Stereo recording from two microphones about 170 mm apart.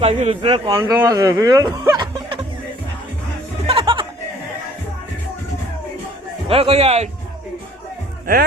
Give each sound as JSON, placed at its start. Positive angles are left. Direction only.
{"t": 0.0, "sound": "speech", "side_deg": -40}
{"t": 0.7, "sound": "speech", "side_deg": -20}
{"t": 3.7, "sound": "music", "side_deg": -30}
{"t": 6.5, "sound": "speech", "side_deg": -35}